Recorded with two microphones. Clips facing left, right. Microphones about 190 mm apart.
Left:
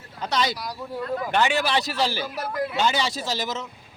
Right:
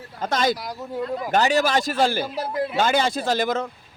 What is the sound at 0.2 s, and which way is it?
Speech, 50° right (ahead or behind).